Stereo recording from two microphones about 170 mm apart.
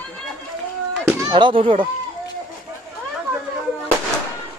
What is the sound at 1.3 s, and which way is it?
Speech, 30° right (ahead or behind).